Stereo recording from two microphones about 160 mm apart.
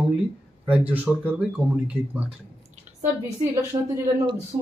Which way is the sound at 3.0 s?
15° right (ahead or behind).